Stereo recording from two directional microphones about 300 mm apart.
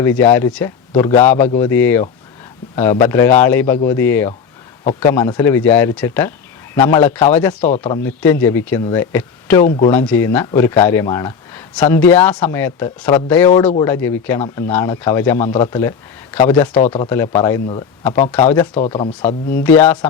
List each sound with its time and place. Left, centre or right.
0.2 s speech: centre
13.5 s speech: centre
19.6 s speech: centre